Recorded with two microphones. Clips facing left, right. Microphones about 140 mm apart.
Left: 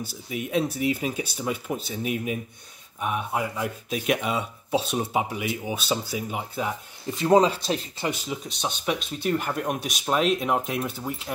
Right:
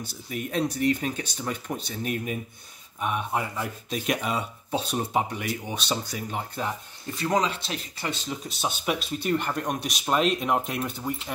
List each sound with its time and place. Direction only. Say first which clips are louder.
0.0 s speech: left 1 dB; 5° left (ahead or behind)
7.2 s speech: left 7 dB; 30° left (ahead or behind)
8.3 s speech: even; 5° right (ahead or behind)